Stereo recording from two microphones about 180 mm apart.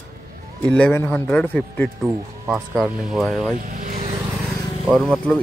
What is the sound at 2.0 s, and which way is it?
Speech, 15° right (ahead or behind).